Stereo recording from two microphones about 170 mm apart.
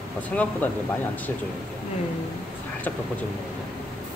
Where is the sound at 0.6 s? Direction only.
10° left (ahead or behind).